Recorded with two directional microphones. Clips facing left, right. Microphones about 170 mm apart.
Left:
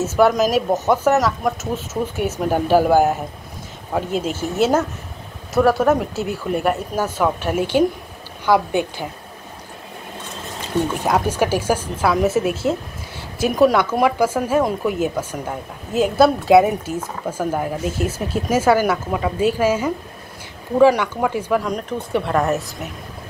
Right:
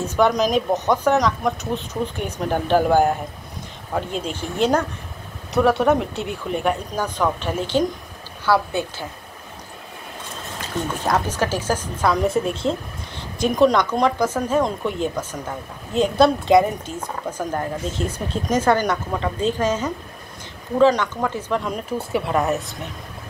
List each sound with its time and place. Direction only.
0.0 s speech: 5° left (ahead or behind)
11.1 s speech: 10° left (ahead or behind)
21.6 s speech: 5° right (ahead or behind)